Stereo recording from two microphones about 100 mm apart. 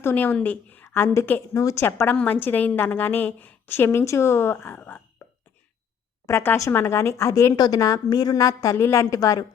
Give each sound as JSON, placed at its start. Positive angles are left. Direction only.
{"t": 0.0, "sound": "a woman's voice", "side_deg": 20}
{"t": 6.2, "sound": "a woman's voice", "side_deg": 25}
{"t": 7.5, "sound": "a woman's voice", "side_deg": 40}